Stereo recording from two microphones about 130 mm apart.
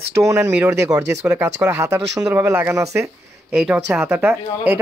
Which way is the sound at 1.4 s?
20° right (ahead or behind).